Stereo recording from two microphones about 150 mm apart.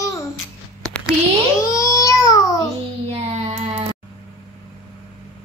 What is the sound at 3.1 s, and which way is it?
Child singing, 45° right (ahead or behind).